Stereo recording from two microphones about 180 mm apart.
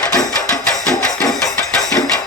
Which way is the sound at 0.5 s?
5° left (ahead or behind).